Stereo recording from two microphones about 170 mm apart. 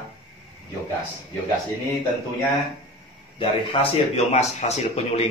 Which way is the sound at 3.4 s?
35° left (ahead or behind).